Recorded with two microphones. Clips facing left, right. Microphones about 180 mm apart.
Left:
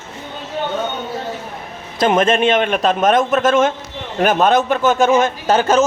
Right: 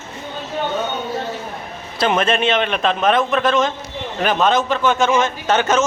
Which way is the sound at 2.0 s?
45° left (ahead or behind).